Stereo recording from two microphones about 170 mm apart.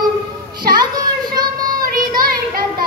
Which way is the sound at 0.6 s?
25° right (ahead or behind).